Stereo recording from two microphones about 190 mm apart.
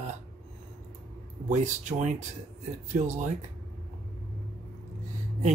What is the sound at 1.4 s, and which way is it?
Speech, 40° right (ahead or behind).